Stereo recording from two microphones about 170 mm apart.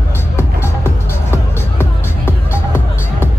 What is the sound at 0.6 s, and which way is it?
Music, 15° left (ahead or behind).